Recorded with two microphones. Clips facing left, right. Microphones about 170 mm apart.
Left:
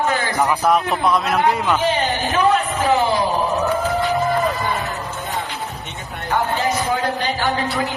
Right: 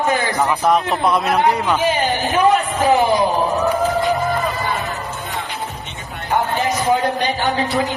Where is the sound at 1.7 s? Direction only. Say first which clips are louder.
Right 1 dB; 10° right (ahead or behind).